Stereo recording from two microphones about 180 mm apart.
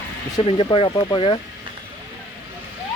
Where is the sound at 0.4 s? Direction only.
30° left (ahead or behind).